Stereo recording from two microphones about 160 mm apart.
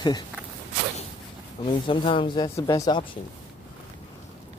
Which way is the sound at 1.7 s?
30° left (ahead or behind).